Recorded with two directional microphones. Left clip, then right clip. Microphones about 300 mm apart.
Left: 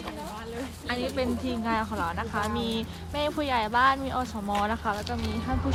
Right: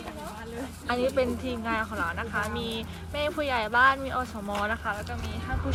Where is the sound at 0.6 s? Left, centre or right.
Centre.